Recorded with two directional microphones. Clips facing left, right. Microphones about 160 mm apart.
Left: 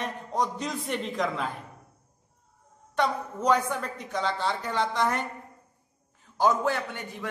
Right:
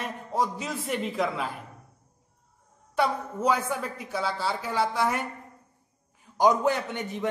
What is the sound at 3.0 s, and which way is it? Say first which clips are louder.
A woman's voice: right 1 dB; 5° right (ahead or behind).